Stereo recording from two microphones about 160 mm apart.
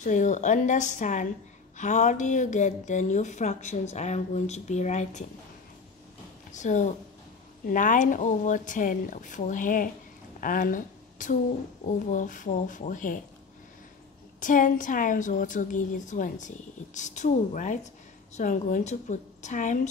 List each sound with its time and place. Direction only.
0.0 s a woman's voice: 50° left (ahead or behind)
6.5 s a woman's voice: 50° left (ahead or behind)
14.4 s a woman's voice: 55° left (ahead or behind)